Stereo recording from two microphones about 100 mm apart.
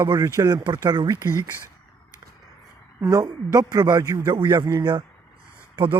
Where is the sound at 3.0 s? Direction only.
30° right (ahead or behind).